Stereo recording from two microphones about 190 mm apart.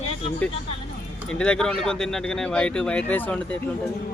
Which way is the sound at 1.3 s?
5° left (ahead or behind).